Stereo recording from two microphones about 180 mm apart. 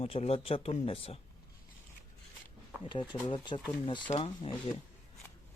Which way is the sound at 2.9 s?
25° left (ahead or behind).